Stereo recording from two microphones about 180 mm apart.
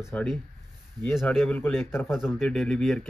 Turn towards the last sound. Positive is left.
turn(degrees=0)  # may be behind; listen again after turning